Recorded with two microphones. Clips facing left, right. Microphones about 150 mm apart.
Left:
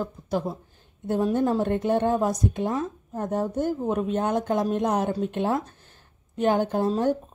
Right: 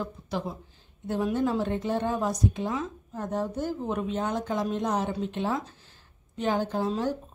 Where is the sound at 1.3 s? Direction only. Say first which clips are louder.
Left 3 dB; 50° left (ahead or behind).